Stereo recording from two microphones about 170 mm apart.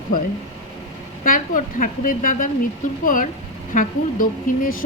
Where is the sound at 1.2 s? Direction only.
50° left (ahead or behind).